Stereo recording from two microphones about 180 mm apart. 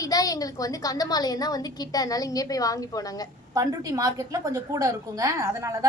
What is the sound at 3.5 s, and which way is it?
A woman's voice, 20° right (ahead or behind).